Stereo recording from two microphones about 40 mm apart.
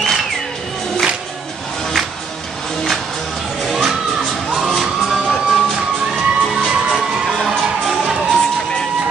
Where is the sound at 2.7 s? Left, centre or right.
Centre.